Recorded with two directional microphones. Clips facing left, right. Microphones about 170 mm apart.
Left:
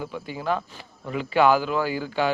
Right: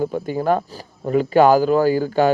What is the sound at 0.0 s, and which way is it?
Speech, 45° right (ahead or behind).